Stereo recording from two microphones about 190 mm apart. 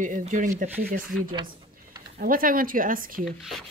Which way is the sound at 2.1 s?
50° right (ahead or behind).